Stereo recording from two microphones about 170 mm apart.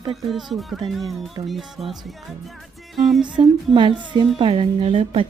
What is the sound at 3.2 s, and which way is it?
A woman's voice, 30° right (ahead or behind).